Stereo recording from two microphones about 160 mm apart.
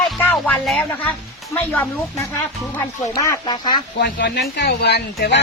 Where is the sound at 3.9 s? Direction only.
90° left.